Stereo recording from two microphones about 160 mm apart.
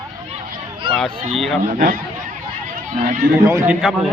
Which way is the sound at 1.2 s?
Centre (ahead or behind).